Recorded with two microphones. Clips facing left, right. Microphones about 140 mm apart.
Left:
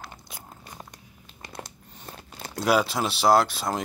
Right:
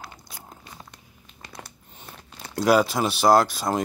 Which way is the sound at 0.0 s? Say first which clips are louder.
Even; centre (ahead or behind).